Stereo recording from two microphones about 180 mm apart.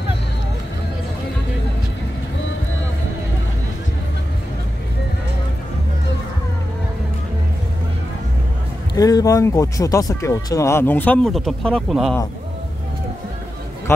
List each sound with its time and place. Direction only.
8.9 s speech: 20° left (ahead or behind); by 12.2 s centre (ahead or behind)
13.9 s a man's voice: 15° left (ahead or behind)